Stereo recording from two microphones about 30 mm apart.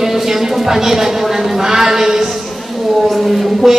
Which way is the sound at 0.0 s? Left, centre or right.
Centre.